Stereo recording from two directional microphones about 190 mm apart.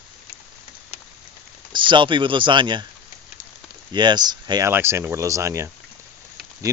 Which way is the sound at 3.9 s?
25° right (ahead or behind).